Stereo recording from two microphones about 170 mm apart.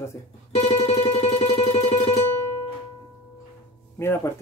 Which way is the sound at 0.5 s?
40° left (ahead or behind).